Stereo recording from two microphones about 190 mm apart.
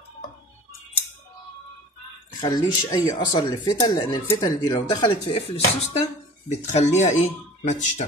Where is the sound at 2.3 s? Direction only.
20° left (ahead or behind).